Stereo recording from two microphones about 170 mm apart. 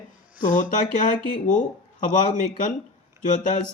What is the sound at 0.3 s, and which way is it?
Speech, 50° left (ahead or behind).